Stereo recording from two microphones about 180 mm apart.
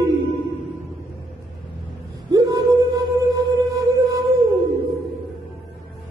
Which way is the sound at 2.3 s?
20° right (ahead or behind).